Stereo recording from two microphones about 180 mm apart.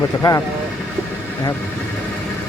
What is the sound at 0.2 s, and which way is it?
Speech, 20° left (ahead or behind).